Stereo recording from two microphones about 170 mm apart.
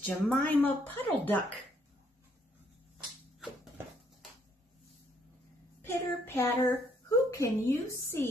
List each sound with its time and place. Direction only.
0.0 s a woman's voice: 10° left (ahead or behind)
3.3 s a sound: centre (ahead or behind)
5.8 s a woman's voice: 15° left (ahead or behind)